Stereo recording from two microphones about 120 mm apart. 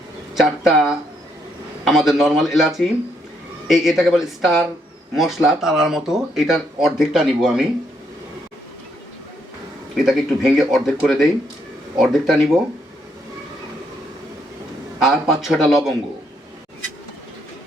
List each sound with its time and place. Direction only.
0.3 s speech: centre (ahead or behind)
9.9 s speech: centre (ahead or behind)
15.0 s speech: 5° right (ahead or behind)